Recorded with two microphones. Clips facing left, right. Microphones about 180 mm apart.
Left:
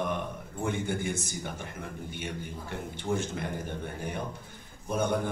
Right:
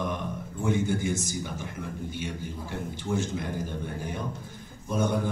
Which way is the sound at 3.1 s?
60° left (ahead or behind).